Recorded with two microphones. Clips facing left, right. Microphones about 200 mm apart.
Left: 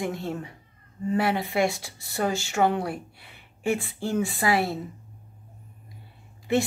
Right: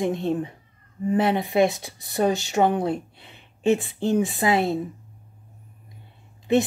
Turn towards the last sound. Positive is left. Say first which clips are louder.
# right 4 dB
turn(degrees=-20)  # may be behind; listen again after turning